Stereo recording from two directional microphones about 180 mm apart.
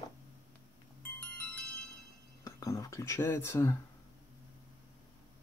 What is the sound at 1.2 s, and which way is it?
Music, 5° left (ahead or behind).